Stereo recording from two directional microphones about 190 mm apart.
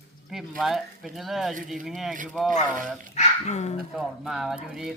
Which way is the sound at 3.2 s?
35° left (ahead or behind).